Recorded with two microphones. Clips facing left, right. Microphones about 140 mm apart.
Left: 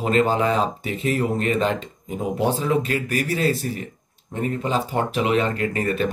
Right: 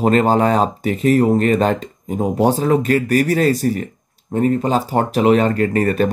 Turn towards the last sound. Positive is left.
turn(degrees=-45)  # may be behind; listen again after turning